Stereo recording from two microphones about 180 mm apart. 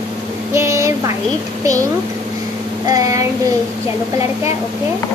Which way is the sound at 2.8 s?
20° right (ahead or behind).